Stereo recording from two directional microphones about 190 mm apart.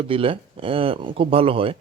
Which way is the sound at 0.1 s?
30° right (ahead or behind).